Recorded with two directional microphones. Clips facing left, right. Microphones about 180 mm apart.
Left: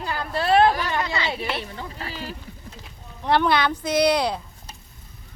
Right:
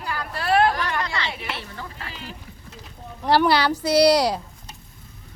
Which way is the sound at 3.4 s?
5° right (ahead or behind).